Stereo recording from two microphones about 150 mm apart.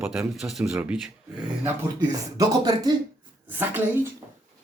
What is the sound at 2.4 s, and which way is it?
Speech, 25° right (ahead or behind).